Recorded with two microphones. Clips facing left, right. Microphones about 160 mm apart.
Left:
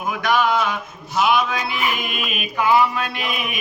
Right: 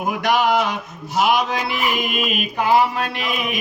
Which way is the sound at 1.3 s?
35° right (ahead or behind).